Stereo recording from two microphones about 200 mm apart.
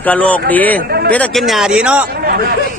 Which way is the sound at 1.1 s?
5° left (ahead or behind).